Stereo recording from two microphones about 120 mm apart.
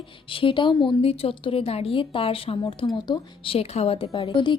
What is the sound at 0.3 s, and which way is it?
A woman's voice, 45° left (ahead or behind).